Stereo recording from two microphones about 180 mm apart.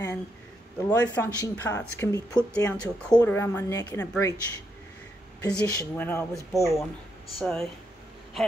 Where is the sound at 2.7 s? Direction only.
5° left (ahead or behind).